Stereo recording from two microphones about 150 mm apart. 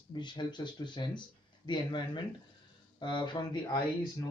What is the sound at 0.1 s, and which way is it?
Speech, 30° left (ahead or behind).